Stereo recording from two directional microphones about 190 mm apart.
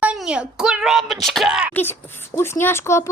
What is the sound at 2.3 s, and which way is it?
Speech, 15° left (ahead or behind).